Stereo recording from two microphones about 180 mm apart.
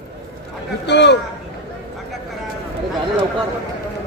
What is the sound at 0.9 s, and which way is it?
Speech, 70° left (ahead or behind).